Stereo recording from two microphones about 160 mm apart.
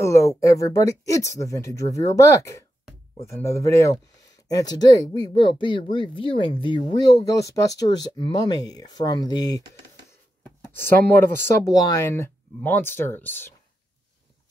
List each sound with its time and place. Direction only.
0.0 s speech: 20° left (ahead or behind)
10.4 s speech: 10° left (ahead or behind)